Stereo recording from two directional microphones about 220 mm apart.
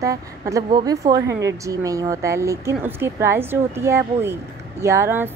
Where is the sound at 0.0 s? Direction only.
15° right (ahead or behind).